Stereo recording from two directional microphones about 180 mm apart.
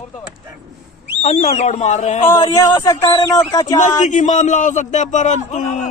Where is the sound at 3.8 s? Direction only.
45° left (ahead or behind).